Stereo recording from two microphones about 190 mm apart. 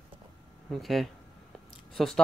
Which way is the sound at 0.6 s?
Centre (ahead or behind).